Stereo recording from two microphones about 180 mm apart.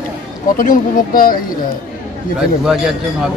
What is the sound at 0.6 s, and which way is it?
Speech, 50° left (ahead or behind).